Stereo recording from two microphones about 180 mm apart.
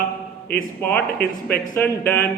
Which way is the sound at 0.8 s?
10° left (ahead or behind).